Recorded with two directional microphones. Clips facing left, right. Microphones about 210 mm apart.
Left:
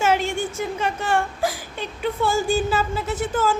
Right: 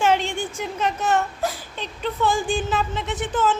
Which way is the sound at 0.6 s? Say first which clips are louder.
Even; 10° left (ahead or behind).